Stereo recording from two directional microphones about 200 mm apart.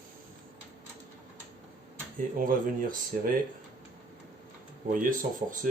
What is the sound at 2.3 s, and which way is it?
Speech, 45° right (ahead or behind).